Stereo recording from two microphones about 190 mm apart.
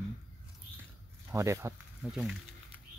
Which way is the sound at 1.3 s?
15° right (ahead or behind).